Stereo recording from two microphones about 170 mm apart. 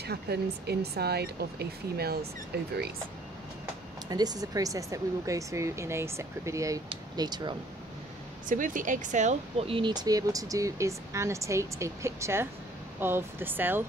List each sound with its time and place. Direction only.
0.0 s speech: 70° right (ahead or behind)
4.1 s speech: 20° right (ahead or behind)
8.5 s speech: 50° right (ahead or behind); by 13.8 s 10° right (ahead or behind)